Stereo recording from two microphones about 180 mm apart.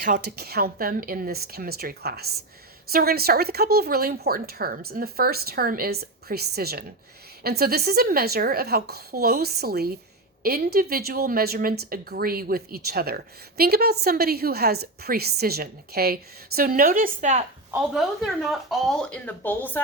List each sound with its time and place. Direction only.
0.0 s a woman's voice: 55° right (ahead or behind)
17.9 s speech: centre (ahead or behind)